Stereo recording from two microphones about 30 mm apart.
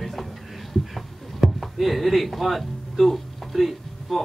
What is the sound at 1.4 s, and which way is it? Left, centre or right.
Music, centre.